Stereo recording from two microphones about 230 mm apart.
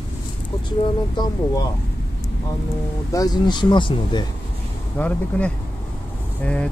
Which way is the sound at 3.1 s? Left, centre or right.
Centre.